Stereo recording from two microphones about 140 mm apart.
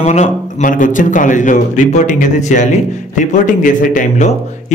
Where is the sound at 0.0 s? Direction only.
55° left (ahead or behind).